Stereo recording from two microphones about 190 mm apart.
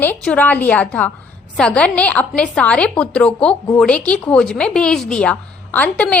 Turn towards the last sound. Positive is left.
turn(degrees=5)  # may be behind; listen again after turning